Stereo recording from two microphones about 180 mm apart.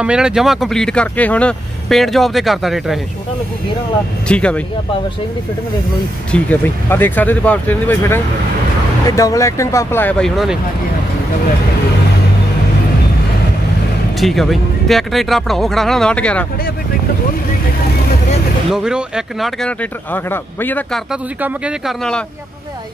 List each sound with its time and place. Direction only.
0.0 s speech: 5° right (ahead or behind)
4.3 s speech: 5° left (ahead or behind)
6.3 s speech: 10° left (ahead or behind)
14.2 s speech: centre (ahead or behind)
18.7 s speech: 5° right (ahead or behind)
21.1 s speech: 5° right (ahead or behind)